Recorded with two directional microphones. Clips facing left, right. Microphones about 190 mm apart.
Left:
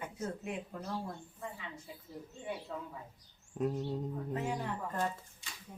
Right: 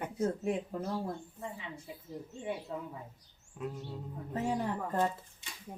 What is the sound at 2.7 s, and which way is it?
Speech, 20° right (ahead or behind).